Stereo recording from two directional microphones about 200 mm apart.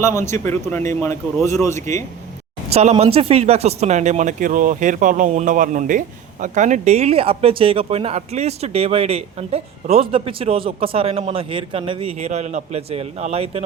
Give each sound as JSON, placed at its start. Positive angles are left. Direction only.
{"t": 0.0, "sound": "speech", "side_deg": 15}
{"t": 2.7, "sound": "speech", "side_deg": -30}